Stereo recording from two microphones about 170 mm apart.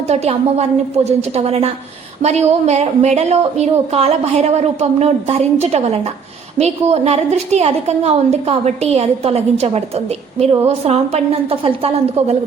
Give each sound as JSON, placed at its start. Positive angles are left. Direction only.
{"t": 0.1, "sound": "a woman's voice", "side_deg": -40}